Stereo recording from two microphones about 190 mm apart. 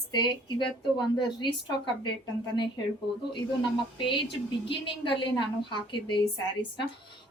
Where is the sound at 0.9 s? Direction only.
25° left (ahead or behind).